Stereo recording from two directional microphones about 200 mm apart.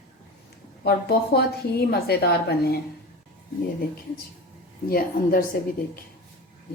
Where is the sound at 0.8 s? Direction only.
55° left (ahead or behind).